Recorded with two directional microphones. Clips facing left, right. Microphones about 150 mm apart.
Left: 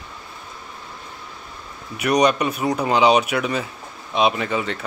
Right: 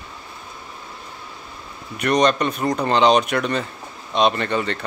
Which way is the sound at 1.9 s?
10° left (ahead or behind).